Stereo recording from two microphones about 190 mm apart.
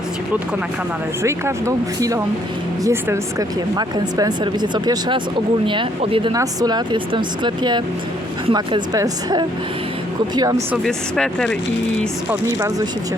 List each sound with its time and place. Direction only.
1.2 s speech: 15° right (ahead or behind)
10.8 s speech: 5° left (ahead or behind)
12.5 s speech: 15° right (ahead or behind)